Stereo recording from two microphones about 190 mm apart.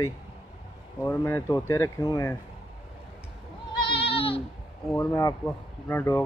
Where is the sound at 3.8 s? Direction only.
30° left (ahead or behind).